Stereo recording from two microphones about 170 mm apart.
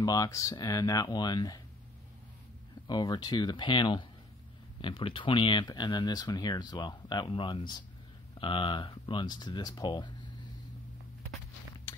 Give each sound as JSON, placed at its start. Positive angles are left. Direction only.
{"t": 0.0, "sound": "speech", "side_deg": 20}
{"t": 2.9, "sound": "speech", "side_deg": 25}